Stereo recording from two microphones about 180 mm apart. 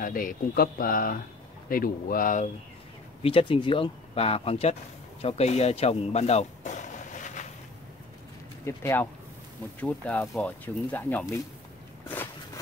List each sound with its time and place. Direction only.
0.0 s speech: 50° left (ahead or behind)
3.2 s speech: 30° left (ahead or behind)
8.6 s speech: 15° left (ahead or behind)